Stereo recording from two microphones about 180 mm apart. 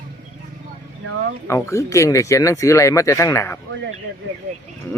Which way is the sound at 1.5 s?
15° left (ahead or behind).